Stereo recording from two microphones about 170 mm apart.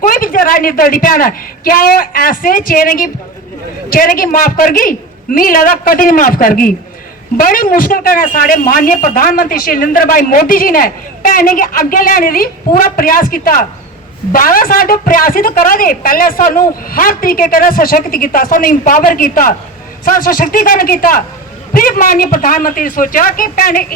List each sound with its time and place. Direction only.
0.0 s speech: 55° left (ahead or behind)